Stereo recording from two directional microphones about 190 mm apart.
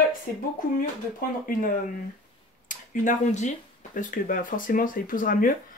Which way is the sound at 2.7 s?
40° left (ahead or behind).